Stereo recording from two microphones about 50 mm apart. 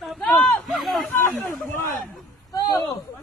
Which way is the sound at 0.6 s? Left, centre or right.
Centre.